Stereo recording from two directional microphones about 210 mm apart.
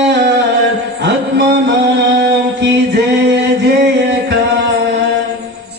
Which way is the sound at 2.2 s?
55° right (ahead or behind).